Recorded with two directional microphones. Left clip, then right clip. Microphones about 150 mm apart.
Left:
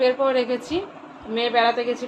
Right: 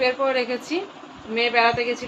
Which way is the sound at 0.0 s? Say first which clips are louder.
Left 2 dB; 10° right (ahead or behind).